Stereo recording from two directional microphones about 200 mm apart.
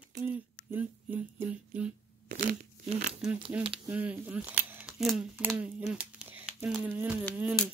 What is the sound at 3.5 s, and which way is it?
Speech, 10° right (ahead or behind).